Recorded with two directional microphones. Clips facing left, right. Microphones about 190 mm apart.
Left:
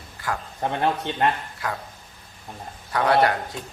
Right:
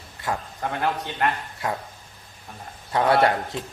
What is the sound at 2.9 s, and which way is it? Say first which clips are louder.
Speech: right 1 dB; 25° right (ahead or behind).